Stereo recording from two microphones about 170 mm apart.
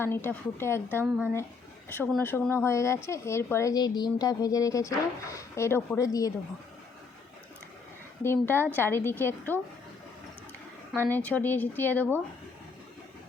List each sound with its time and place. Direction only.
0.0 s a woman's voice: 15° left (ahead or behind)
1.0 s speech: 10° right (ahead or behind)
1.9 s a woman's voice: 15° left (ahead or behind)
8.2 s a woman's voice: 15° left (ahead or behind)
11.1 s a woman's voice: 10° left (ahead or behind)